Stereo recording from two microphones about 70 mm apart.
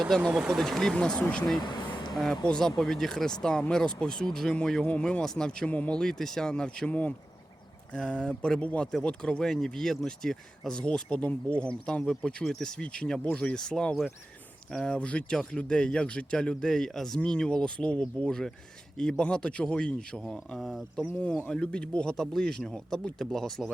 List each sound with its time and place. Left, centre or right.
0.2 s speech: centre
0.4 s speech: centre
1.6 s a sound: left
2.1 s speech: centre
6.0 s speech: centre